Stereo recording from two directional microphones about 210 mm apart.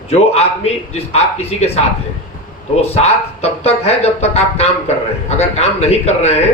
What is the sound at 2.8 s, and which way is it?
A man's voice, 30° left (ahead or behind).